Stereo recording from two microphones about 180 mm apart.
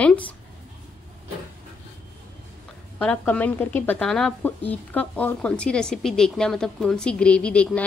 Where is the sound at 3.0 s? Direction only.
10° left (ahead or behind).